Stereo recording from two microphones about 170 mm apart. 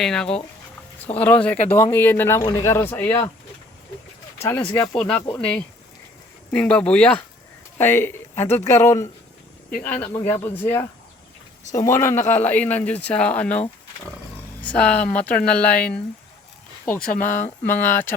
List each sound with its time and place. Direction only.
0.0 s speech: 5° left (ahead or behind)
4.4 s speech: 10° left (ahead or behind)
17.0 s speech: 55° left (ahead or behind)
17.7 s speech: 10° left (ahead or behind)